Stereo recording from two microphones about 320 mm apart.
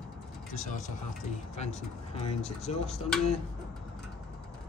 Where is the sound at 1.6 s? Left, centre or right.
Centre.